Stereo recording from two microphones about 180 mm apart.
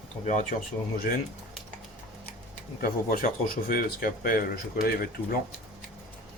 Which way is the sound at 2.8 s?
50° left (ahead or behind).